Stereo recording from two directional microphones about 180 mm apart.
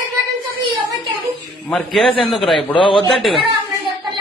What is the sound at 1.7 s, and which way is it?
Speech, centre (ahead or behind).